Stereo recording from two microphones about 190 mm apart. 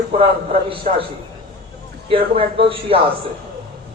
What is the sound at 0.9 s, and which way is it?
Speech, 40° right (ahead or behind).